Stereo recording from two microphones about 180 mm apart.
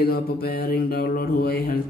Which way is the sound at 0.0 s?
60° left (ahead or behind).